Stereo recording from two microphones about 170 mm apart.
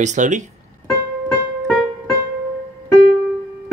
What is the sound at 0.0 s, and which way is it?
Speech, 45° right (ahead or behind).